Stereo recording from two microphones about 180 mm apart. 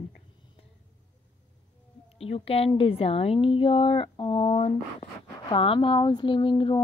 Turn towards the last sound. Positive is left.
turn(degrees=25)  # may be behind; listen again after turning